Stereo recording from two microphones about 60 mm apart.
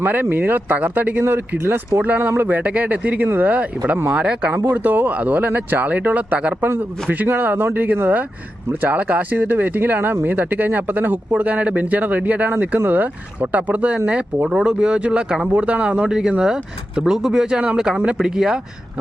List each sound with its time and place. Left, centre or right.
0.0 s speech: right
1.2 s speech: right; by 4.5 s centre
4.7 s speech: right; by 18.6 s centre